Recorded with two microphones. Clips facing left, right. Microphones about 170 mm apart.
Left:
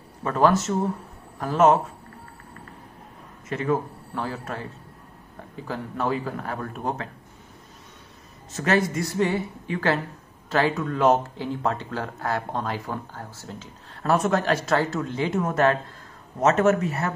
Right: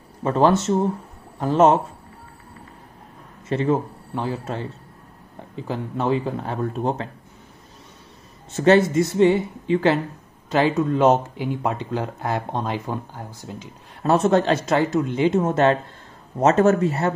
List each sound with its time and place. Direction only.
0.2 s speech: 25° right (ahead or behind)
3.4 s speech: 30° right (ahead or behind)
8.5 s speech: 30° right (ahead or behind)
14.1 s speech: 25° right (ahead or behind)